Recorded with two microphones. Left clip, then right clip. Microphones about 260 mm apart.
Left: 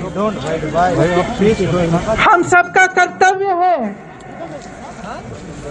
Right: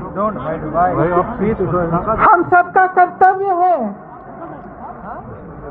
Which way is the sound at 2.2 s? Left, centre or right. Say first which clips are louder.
Even; right.